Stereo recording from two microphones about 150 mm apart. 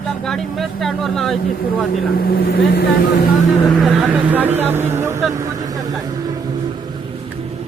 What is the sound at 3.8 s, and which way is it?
Speech, centre (ahead or behind).